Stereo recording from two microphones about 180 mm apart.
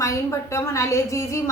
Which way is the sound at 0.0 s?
15° left (ahead or behind).